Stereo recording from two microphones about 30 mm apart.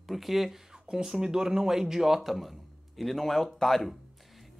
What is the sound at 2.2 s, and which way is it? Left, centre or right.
Speech, centre.